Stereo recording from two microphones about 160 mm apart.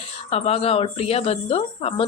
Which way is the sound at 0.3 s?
40° left (ahead or behind).